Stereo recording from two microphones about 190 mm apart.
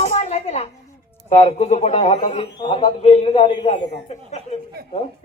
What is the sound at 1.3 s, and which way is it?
A man's voice, 35° left (ahead or behind).